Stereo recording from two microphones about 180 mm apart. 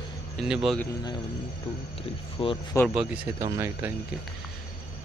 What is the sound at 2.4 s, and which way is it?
Speech, 30° left (ahead or behind).